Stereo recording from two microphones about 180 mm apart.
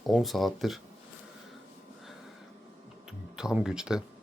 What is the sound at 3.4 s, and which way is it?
Speech, 5° right (ahead or behind).